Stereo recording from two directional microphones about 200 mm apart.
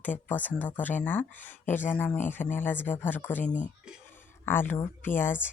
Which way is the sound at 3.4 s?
40° left (ahead or behind).